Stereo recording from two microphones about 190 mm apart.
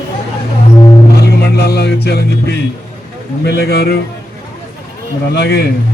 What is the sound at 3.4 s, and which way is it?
Speech, 55° left (ahead or behind).